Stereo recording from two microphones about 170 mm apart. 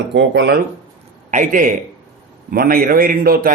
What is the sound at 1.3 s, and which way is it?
A man's voice, 50° right (ahead or behind).